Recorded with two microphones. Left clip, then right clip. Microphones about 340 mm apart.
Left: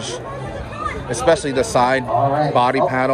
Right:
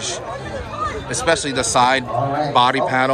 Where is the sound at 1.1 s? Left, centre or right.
Centre.